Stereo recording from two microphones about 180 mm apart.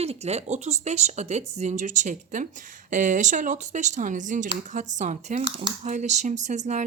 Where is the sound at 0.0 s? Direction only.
35° right (ahead or behind).